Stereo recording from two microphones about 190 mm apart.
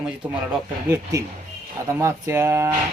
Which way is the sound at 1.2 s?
15° right (ahead or behind).